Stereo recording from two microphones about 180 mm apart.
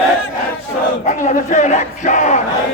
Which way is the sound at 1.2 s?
40° left (ahead or behind).